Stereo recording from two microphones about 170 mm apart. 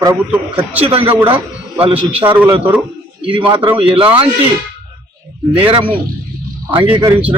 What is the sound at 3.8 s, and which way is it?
Speech, 30° right (ahead or behind).